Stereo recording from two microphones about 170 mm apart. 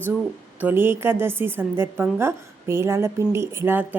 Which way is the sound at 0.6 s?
15° right (ahead or behind).